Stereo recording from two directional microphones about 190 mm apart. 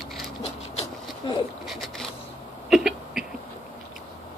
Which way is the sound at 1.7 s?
Centre (ahead or behind).